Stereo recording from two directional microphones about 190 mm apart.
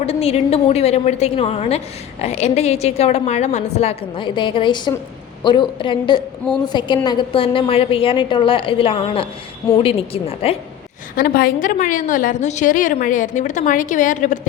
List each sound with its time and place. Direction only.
0.0 s a woman's voice: 35° left (ahead or behind)
11.2 s a woman's voice: 50° left (ahead or behind)